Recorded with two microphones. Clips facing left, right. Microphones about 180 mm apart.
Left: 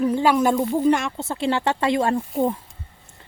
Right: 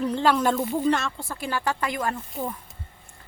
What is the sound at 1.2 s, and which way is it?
Speech, 25° left (ahead or behind).